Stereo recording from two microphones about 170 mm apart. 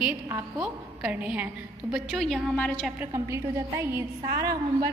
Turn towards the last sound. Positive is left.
turn(degrees=-20)  # may be behind; listen again after turning